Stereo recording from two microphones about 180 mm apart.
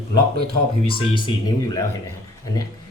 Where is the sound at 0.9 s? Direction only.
30° left (ahead or behind).